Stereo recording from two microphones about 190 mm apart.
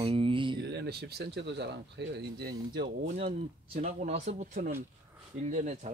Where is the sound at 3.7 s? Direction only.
40° right (ahead or behind).